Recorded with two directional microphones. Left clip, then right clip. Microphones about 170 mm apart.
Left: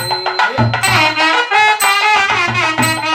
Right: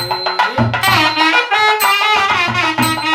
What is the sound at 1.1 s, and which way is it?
Music, 10° right (ahead or behind).